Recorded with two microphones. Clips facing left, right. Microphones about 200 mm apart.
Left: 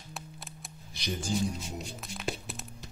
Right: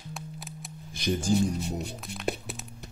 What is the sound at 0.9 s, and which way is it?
Speech, 50° right (ahead or behind).